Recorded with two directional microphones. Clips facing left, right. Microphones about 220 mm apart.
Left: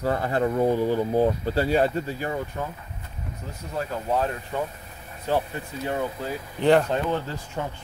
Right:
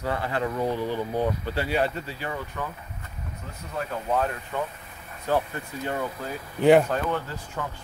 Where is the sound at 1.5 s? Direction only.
40° left (ahead or behind).